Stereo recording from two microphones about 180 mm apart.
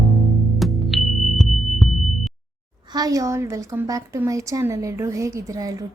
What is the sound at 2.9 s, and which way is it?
A woman's voice, 20° right (ahead or behind).